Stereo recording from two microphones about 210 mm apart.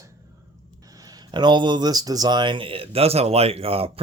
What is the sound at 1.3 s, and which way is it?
Speech, 20° right (ahead or behind).